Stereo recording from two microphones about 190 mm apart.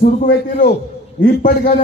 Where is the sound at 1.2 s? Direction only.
45° left (ahead or behind).